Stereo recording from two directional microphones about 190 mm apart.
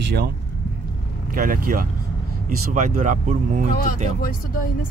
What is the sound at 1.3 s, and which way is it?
Speech, 45° right (ahead or behind).